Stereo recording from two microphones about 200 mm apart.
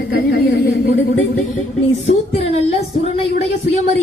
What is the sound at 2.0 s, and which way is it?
Music, 30° left (ahead or behind).